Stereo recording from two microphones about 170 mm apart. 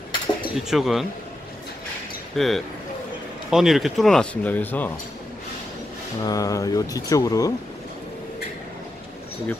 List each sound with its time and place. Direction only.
0.6 s speech: centre (ahead or behind)
2.3 s speech: centre (ahead or behind)
6.2 s speech: 20° left (ahead or behind)